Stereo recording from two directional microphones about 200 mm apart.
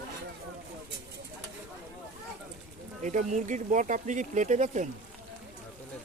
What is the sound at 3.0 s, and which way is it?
Speech, 40° right (ahead or behind).